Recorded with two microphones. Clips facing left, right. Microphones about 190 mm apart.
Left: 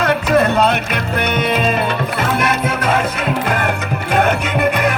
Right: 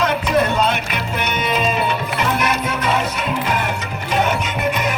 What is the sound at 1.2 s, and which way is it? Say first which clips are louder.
Music: left 3 dB; 55° left (ahead or behind).